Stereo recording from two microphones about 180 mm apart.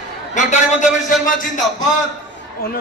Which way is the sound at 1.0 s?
45° left (ahead or behind).